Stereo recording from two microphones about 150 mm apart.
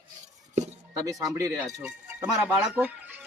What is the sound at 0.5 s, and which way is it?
Speech, 50° right (ahead or behind).